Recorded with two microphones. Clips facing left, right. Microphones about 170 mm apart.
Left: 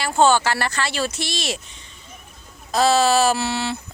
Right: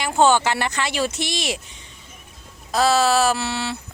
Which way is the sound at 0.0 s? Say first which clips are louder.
Even; 15° right (ahead or behind).